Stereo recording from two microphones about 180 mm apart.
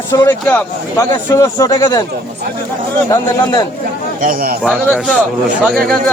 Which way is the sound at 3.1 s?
20° left (ahead or behind).